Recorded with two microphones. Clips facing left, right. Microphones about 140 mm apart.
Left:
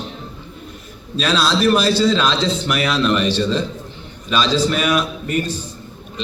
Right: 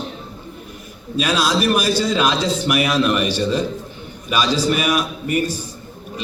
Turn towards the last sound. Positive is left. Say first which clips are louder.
# right 1 dB
turn(degrees=-10)  # may be behind; listen again after turning